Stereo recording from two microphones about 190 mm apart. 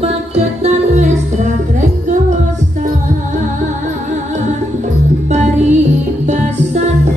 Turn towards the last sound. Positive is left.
turn(degrees=-35)  # may be behind; listen again after turning